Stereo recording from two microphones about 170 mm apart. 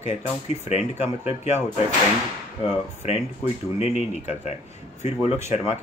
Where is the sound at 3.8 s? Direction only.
40° left (ahead or behind).